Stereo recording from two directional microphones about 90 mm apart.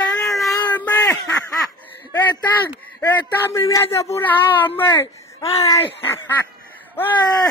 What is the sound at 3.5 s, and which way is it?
Speech, 35° left (ahead or behind).